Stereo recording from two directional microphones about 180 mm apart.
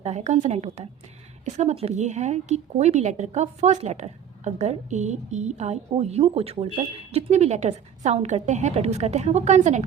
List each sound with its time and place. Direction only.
0.0 s a woman's voice: 40° right (ahead or behind)